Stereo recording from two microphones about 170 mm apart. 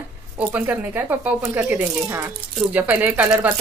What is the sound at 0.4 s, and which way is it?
Speech, 10° right (ahead or behind).